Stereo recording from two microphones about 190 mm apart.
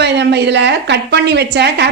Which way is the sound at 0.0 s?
60° right (ahead or behind).